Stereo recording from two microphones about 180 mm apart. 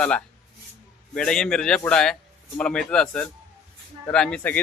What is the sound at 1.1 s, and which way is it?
A man's voice, 5° left (ahead or behind).